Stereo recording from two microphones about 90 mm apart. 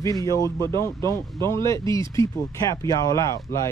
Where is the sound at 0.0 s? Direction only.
40° left (ahead or behind).